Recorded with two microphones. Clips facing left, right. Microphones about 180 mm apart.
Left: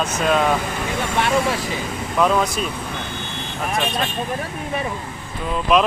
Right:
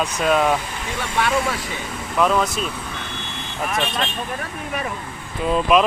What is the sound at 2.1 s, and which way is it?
Speech, 5° left (ahead or behind).